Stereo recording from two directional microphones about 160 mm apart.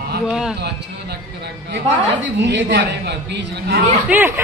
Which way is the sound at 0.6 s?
90° right.